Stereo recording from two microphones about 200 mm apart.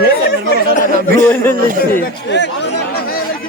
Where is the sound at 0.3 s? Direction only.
50° left (ahead or behind).